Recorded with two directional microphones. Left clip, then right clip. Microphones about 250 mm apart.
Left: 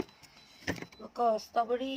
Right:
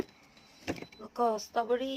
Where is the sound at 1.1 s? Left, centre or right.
Centre.